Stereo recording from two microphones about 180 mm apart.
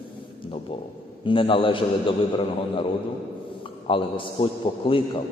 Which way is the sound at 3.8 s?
30° left (ahead or behind).